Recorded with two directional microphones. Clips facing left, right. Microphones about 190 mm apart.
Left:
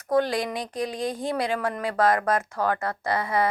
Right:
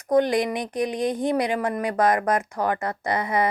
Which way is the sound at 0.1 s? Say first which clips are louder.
Right 3 dB; 20° right (ahead or behind).